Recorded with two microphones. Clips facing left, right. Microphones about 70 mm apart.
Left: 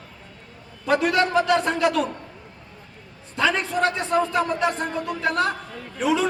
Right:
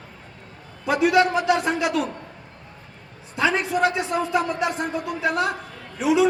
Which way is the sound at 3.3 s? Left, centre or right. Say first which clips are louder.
Right 1 dB; centre.